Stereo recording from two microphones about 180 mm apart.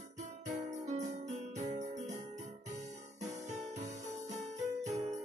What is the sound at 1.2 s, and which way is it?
Jingle bell, 40° right (ahead or behind).